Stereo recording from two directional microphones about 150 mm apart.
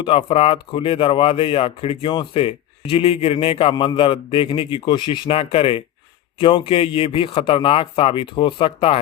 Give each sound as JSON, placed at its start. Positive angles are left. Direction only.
{"t": 0.0, "sound": "speech", "side_deg": 35}